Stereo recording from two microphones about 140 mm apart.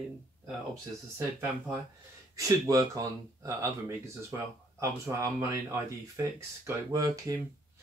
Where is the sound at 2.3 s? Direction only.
25° right (ahead or behind).